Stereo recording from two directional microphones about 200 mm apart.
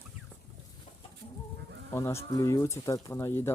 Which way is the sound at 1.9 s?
15° left (ahead or behind).